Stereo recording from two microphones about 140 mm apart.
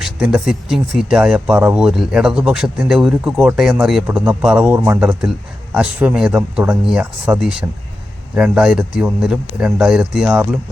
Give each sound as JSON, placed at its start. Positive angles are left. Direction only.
{"t": 0.0, "sound": "speech", "side_deg": -5}
{"t": 4.0, "sound": "speech", "side_deg": -15}